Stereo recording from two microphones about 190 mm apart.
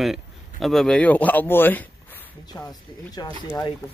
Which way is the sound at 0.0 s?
Centre (ahead or behind).